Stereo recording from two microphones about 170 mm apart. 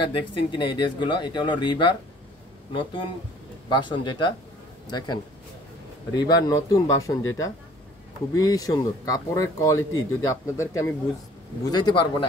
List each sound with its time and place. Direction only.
0.0 s speech: 30° left (ahead or behind)